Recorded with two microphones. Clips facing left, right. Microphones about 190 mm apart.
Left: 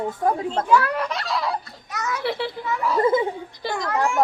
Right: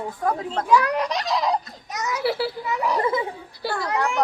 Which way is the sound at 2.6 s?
15° right (ahead or behind).